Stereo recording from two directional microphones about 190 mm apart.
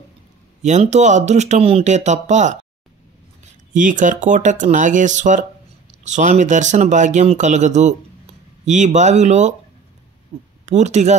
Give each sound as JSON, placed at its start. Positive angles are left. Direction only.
{"t": 0.6, "sound": "speech", "side_deg": -35}
{"t": 3.7, "sound": "speech", "side_deg": -40}
{"t": 10.6, "sound": "speech", "side_deg": -35}